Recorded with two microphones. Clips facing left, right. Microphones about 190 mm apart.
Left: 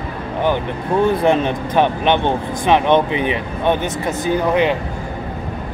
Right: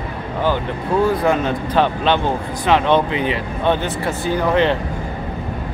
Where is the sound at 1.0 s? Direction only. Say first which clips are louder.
Left 3 dB; 25° left (ahead or behind).